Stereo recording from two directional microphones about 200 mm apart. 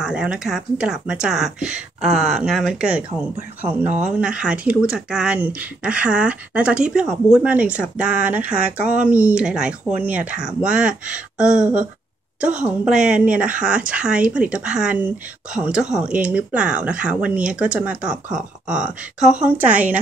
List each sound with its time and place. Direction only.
0.0 s speech: 5° right (ahead or behind)